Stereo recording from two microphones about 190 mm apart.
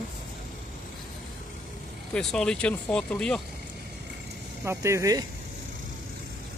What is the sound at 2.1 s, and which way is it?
Speech, 5° left (ahead or behind).